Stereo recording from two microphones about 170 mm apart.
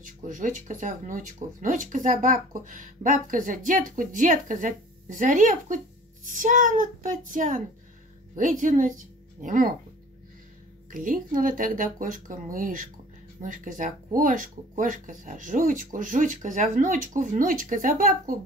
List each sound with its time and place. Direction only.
0.0 s a woman's voice: 50° right (ahead or behind)
10.9 s speech: 50° right (ahead or behind)